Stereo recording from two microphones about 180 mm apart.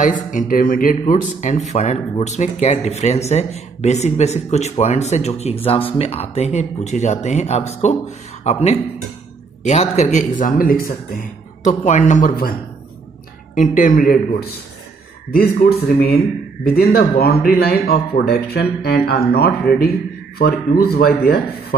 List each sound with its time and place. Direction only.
0.0 s speech: 45° left (ahead or behind)
13.6 s speech: 45° left (ahead or behind)